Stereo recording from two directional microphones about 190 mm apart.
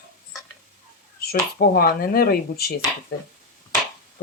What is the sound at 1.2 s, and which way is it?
Speech, 50° left (ahead or behind).